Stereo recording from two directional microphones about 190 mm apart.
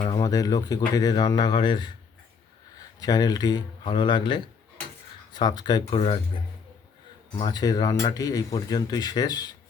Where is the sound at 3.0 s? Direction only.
20° left (ahead or behind).